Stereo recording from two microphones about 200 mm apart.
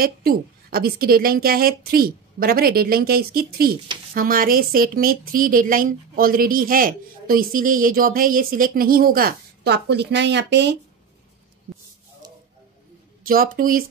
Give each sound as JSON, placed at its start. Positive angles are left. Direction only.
{"t": 0.0, "sound": "a woman's voice", "side_deg": -45}
{"t": 13.2, "sound": "a woman's voice", "side_deg": -45}